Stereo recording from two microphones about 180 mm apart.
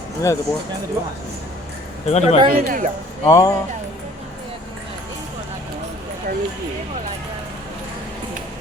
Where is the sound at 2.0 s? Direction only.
35° left (ahead or behind).